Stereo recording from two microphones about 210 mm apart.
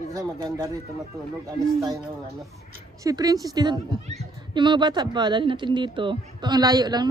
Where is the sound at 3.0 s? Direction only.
15° right (ahead or behind).